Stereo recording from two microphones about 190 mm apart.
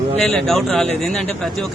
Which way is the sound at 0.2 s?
Centre (ahead or behind).